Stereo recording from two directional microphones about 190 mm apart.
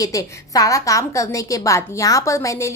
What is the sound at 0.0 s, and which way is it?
A woman's voice, 20° left (ahead or behind).